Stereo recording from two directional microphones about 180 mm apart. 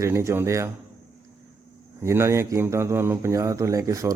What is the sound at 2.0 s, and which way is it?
Speech, 15° right (ahead or behind).